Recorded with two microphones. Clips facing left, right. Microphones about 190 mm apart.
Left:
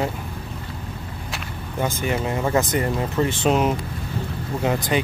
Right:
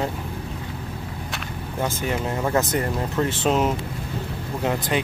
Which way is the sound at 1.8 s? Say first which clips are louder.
Left 2 dB; 5° left (ahead or behind).